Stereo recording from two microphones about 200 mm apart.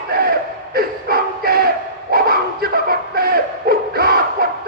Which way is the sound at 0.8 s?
50° right (ahead or behind).